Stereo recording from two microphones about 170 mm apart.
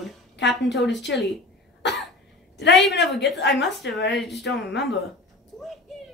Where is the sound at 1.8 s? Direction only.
90° left.